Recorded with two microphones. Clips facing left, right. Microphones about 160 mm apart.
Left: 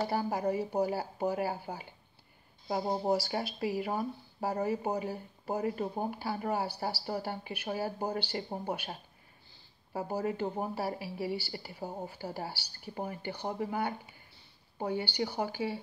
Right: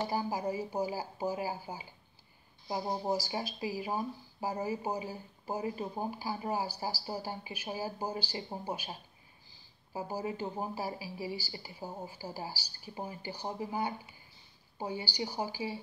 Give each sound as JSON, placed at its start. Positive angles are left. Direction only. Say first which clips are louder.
{"t": 0.1, "sound": "speech", "louder": "left 3 dB", "side_deg": 60}
{"t": 2.8, "sound": "speech", "louder": "left 3 dB", "side_deg": 25}
{"t": 3.1, "sound": "speech", "louder": "left 3 dB", "side_deg": 65}
{"t": 9.9, "sound": "speech", "louder": "left 3 dB", "side_deg": 60}